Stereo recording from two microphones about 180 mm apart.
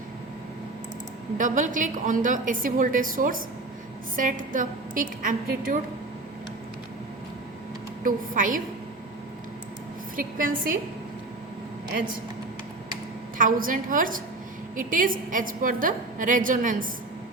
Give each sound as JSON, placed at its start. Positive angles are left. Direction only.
{"t": 1.4, "sound": "a woman's voice", "side_deg": -45}
{"t": 8.0, "sound": "a woman's voice", "side_deg": -50}
{"t": 10.2, "sound": "a woman's voice", "side_deg": -50}
{"t": 13.4, "sound": "a woman's voice", "side_deg": -50}